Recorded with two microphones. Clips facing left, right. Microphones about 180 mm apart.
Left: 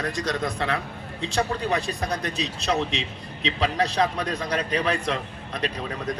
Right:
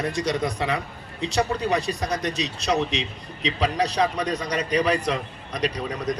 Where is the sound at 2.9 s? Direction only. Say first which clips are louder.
Right 2 dB; 35° left (ahead or behind).